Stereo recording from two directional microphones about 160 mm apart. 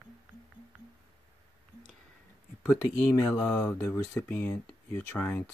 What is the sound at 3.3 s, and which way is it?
Speech, 15° left (ahead or behind).